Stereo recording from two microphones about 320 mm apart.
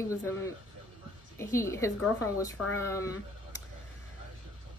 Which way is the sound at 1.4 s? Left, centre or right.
Centre.